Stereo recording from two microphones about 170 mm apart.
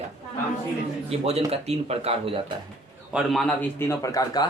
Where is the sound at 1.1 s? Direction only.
35° right (ahead or behind).